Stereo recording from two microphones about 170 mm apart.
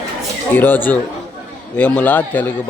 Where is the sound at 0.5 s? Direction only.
10° left (ahead or behind).